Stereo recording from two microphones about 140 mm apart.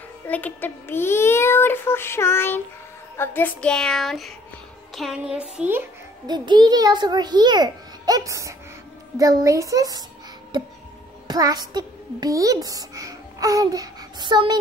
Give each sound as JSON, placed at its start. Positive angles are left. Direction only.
{"t": 0.3, "sound": "a child's voice", "side_deg": 15}
{"t": 6.2, "sound": "a child's voice", "side_deg": -30}
{"t": 10.5, "sound": "a sound", "side_deg": -30}
{"t": 11.2, "sound": "a child's voice", "side_deg": -25}